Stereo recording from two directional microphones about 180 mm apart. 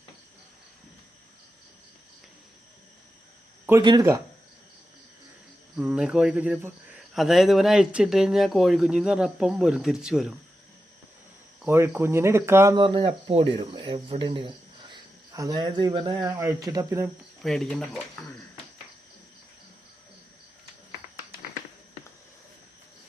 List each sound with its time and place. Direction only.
3.7 s speech: 20° right (ahead or behind)
5.7 s speech: 5° right (ahead or behind)
11.6 s speech: 10° right (ahead or behind)
17.4 s speech: centre (ahead or behind)